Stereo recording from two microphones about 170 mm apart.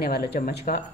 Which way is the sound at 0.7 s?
55° left (ahead or behind).